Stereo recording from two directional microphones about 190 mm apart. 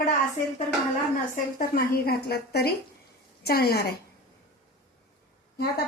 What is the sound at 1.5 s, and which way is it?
A woman's voice, 55° left (ahead or behind).